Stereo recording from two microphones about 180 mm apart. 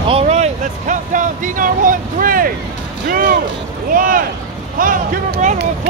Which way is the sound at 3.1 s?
55° right (ahead or behind).